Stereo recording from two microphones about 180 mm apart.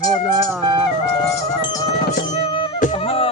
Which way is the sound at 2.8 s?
35° left (ahead or behind).